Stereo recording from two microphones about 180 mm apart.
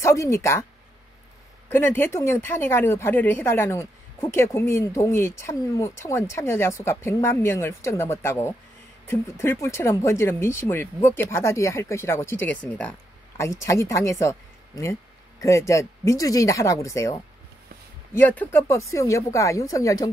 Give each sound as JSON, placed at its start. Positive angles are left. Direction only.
{"t": 0.0, "sound": "speech", "side_deg": 15}
{"t": 1.7, "sound": "speech", "side_deg": 10}
{"t": 15.4, "sound": "speech", "side_deg": 15}